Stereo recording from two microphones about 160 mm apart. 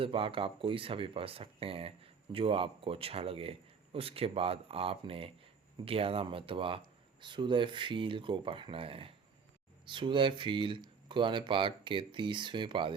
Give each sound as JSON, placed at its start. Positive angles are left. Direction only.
{"t": 0.0, "sound": "speech", "side_deg": -35}